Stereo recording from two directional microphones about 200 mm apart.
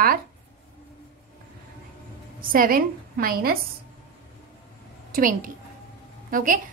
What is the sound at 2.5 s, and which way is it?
A woman's voice, 45° right (ahead or behind).